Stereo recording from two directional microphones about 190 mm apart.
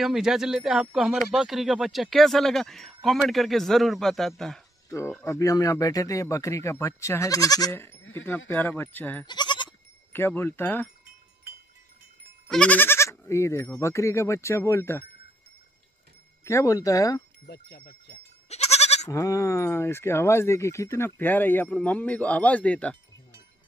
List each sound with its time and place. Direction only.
0.0 s speech: centre (ahead or behind)
4.8 s a sound: 15° left (ahead or behind)
5.1 s speech: 15° left (ahead or behind)
9.2 s goat: 25° left (ahead or behind)
10.1 s speech: 10° left (ahead or behind)
12.4 s speech: 5° left (ahead or behind)
16.4 s speech: 15° left (ahead or behind)
17.5 s speech: 60° left (ahead or behind)
18.5 s goat: 35° left (ahead or behind)
19.0 s speech: 15° left (ahead or behind)